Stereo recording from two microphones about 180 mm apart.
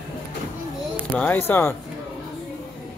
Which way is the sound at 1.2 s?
10° left (ahead or behind).